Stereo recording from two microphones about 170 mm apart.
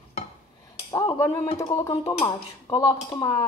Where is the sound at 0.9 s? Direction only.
20° left (ahead or behind).